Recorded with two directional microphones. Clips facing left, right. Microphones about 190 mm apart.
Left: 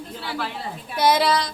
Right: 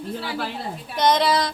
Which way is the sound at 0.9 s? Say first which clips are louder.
Even; 5° left (ahead or behind).